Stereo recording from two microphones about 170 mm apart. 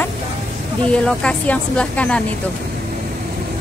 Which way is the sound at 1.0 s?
5° left (ahead or behind).